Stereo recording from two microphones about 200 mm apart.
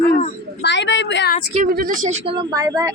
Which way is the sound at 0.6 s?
60° left (ahead or behind).